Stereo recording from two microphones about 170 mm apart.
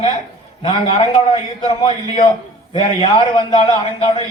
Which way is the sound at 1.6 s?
30° left (ahead or behind).